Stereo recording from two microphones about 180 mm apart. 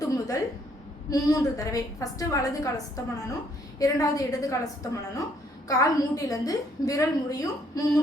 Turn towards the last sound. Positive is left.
turn(degrees=20)  # may be behind; listen again after turning